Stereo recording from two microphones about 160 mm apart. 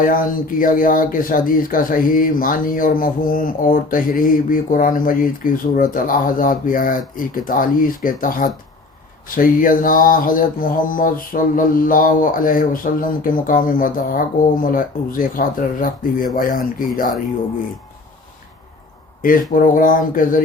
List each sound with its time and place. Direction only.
0.0 s speech: 60° left (ahead or behind)
19.2 s speech: 55° left (ahead or behind)